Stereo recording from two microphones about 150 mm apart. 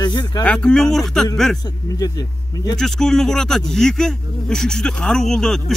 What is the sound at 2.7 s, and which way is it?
Speech, centre (ahead or behind).